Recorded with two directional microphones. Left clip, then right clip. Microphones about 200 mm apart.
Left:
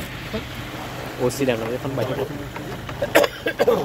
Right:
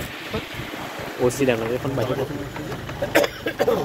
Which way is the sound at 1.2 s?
5° left (ahead or behind).